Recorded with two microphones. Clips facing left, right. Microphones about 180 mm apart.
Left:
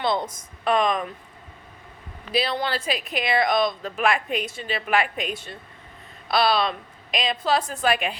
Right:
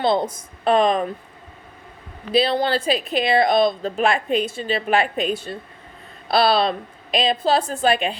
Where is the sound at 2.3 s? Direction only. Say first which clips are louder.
Right 6 dB; 30° right (ahead or behind).